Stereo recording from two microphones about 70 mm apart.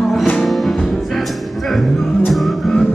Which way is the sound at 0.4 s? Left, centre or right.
Centre.